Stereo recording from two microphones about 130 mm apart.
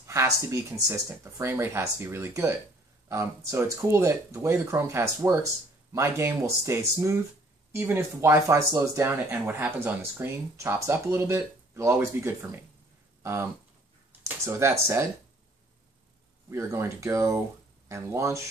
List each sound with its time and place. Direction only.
0.0 s speech: 20° right (ahead or behind)
16.4 s speech: 20° right (ahead or behind)